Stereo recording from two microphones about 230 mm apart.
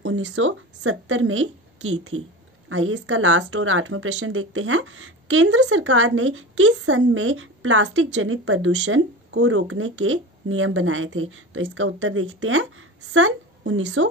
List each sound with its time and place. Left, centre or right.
0.0 s a woman's voice: right